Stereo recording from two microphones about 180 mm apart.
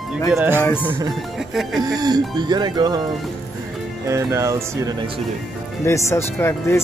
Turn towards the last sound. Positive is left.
turn(degrees=15)  # may be behind; listen again after turning